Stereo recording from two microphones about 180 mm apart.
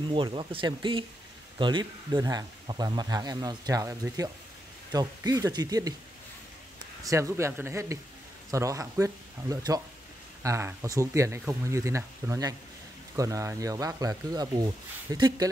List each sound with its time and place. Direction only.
0.1 s speech: 30° right (ahead or behind)
7.0 s speech: 15° right (ahead or behind)